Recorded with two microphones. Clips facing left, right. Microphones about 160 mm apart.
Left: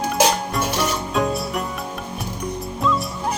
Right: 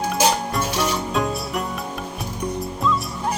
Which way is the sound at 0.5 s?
Centre (ahead or behind).